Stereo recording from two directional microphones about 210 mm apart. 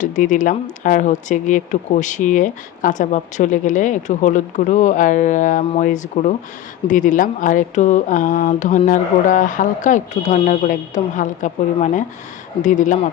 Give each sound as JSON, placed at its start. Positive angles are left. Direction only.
{"t": 0.0, "sound": "speech", "side_deg": 35}